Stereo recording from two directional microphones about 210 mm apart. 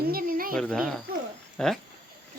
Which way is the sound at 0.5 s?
5° left (ahead or behind).